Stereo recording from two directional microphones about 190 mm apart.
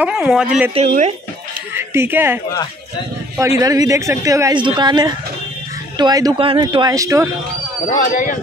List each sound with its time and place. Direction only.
0.0 s speech: 5° right (ahead or behind)
0.7 s speech: 35° right (ahead or behind)
1.8 s speech: 10° right (ahead or behind)
8.0 s speech: 45° left (ahead or behind)